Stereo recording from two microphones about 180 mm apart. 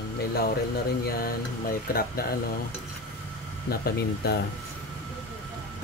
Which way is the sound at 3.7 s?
60° left (ahead or behind).